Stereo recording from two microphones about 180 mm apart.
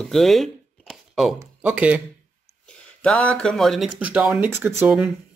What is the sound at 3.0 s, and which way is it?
Speech, 5° left (ahead or behind).